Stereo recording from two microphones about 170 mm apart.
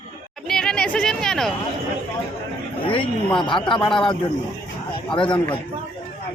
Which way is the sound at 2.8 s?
30° left (ahead or behind).